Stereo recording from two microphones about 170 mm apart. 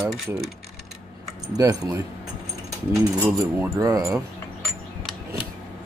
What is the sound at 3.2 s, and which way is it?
Speech, 20° right (ahead or behind).